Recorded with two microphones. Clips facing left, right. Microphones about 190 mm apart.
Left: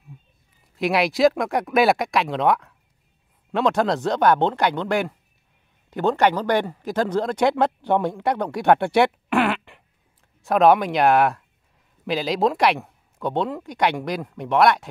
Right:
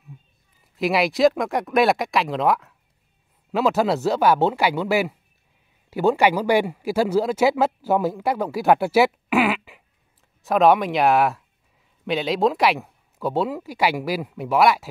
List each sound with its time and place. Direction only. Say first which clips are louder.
0.7 s a man's voice: even; centre (ahead or behind)